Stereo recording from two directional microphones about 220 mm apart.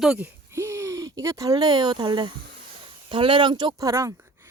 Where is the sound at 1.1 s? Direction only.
15° right (ahead or behind).